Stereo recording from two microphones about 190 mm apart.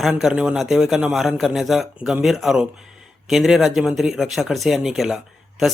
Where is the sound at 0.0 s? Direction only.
Centre (ahead or behind).